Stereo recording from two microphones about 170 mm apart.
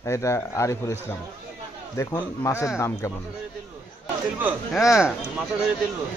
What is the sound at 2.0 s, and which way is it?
Speech, 15° left (ahead or behind).